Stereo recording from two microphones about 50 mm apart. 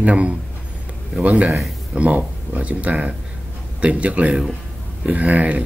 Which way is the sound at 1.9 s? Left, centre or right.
Right.